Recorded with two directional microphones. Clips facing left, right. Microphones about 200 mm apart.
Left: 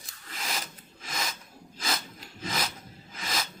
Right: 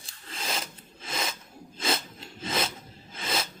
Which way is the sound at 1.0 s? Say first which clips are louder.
Right 3 dB; 30° right (ahead or behind).